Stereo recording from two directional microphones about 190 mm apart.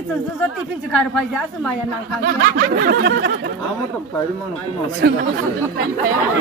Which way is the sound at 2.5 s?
50° right (ahead or behind).